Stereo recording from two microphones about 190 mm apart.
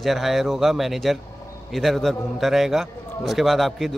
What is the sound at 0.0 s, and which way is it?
A man's voice, centre (ahead or behind).